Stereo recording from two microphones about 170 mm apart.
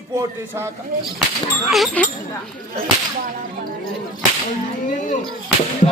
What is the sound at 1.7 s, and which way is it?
Speech, centre (ahead or behind).